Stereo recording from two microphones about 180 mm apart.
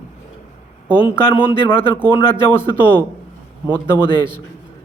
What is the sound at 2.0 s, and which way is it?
Speech, 30° left (ahead or behind).